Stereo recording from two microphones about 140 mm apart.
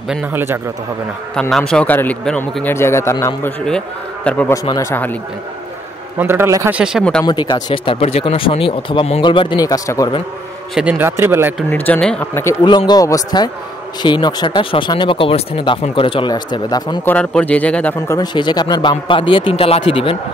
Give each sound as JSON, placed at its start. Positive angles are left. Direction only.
{"t": 0.1, "sound": "a man's voice", "side_deg": -15}
{"t": 1.3, "sound": "a man's voice", "side_deg": 5}
{"t": 3.6, "sound": "a man's voice", "side_deg": 5}
{"t": 4.6, "sound": "a man's voice", "side_deg": 20}
{"t": 6.1, "sound": "a man's voice", "side_deg": -15}
{"t": 6.7, "sound": "speech", "side_deg": -5}
{"t": 7.2, "sound": "a man's voice", "side_deg": 30}
{"t": 10.7, "sound": "a man's voice", "side_deg": -5}
{"t": 11.7, "sound": "a man's voice", "side_deg": 10}
{"t": 12.6, "sound": "a man's voice", "side_deg": 30}
{"t": 17.0, "sound": "a man's voice", "side_deg": 10}
{"t": 18.0, "sound": "a man's voice", "side_deg": 25}